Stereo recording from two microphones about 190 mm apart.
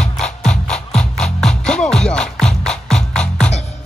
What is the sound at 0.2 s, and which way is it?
Music, 5° left (ahead or behind).